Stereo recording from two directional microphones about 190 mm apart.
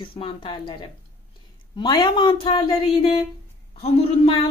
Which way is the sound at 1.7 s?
25° left (ahead or behind).